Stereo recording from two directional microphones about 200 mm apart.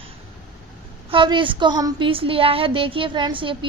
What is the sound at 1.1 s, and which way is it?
A woman's voice, 25° right (ahead or behind).